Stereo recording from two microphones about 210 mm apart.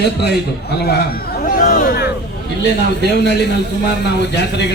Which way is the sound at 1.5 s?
45° left (ahead or behind).